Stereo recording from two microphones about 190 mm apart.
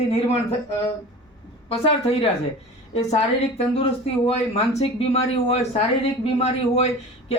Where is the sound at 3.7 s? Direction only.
30° left (ahead or behind).